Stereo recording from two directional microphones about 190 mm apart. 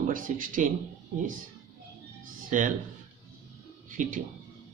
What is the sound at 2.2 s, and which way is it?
Music, 45° right (ahead or behind).